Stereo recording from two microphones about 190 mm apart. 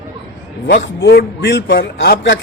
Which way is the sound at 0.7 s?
60° left (ahead or behind).